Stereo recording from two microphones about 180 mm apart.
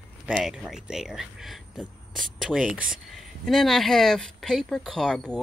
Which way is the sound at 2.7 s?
50° right (ahead or behind).